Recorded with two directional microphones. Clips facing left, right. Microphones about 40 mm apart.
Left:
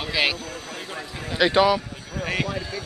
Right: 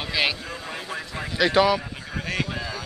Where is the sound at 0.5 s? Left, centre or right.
Right.